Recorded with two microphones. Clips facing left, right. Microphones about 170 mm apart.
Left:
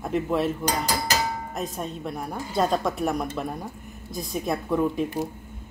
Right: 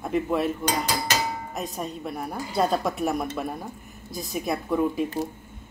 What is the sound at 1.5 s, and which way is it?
Speech, centre (ahead or behind).